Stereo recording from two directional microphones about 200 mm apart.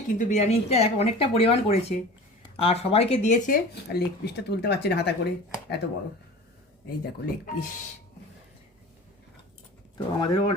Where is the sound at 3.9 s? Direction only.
55° left (ahead or behind).